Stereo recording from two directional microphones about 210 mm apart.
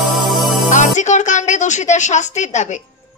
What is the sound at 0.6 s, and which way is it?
A woman's voice, 35° left (ahead or behind).